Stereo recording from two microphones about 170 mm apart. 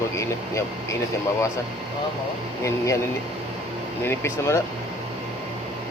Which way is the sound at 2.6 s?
20° left (ahead or behind).